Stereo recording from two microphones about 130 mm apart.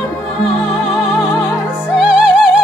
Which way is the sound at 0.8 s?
Centre (ahead or behind).